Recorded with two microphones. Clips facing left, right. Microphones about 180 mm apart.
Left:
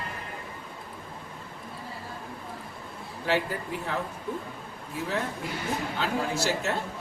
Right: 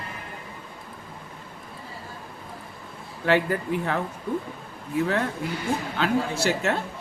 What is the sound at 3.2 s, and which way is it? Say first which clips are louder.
Speech: right 5 dB; 60° right (ahead or behind).